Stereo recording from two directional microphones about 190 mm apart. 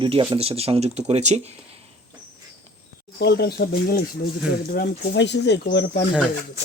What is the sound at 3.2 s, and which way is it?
Speech, 60° left (ahead or behind).